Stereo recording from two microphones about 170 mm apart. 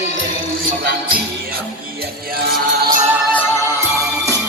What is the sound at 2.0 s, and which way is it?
Music, 60° right (ahead or behind).